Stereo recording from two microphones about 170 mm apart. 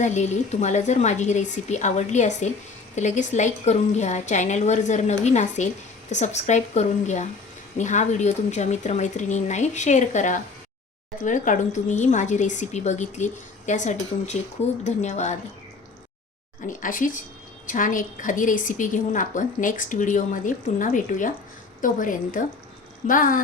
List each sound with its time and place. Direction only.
0.0 s a woman's voice: 45° left (ahead or behind)
16.6 s a woman's voice: 50° left (ahead or behind)